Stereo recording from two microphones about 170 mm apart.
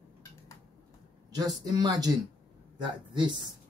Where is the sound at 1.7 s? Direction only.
25° right (ahead or behind).